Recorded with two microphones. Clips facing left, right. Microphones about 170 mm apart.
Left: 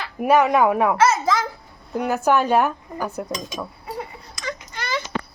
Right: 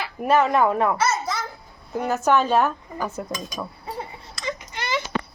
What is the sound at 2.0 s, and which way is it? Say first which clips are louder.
Speech: left 1 dB; 10° left (ahead or behind).